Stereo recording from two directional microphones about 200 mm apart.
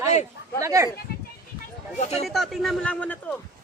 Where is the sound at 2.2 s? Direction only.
Centre (ahead or behind).